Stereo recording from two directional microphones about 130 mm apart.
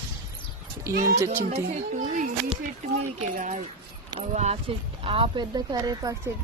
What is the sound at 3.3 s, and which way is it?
Speech, 80° right.